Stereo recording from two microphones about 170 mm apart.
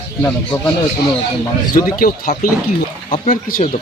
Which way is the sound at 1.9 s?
55° left (ahead or behind).